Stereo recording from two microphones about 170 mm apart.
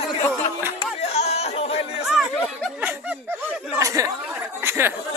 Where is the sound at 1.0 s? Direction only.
40° left (ahead or behind).